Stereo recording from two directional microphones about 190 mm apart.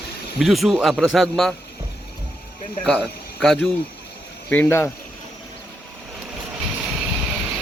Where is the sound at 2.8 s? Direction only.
5° left (ahead or behind).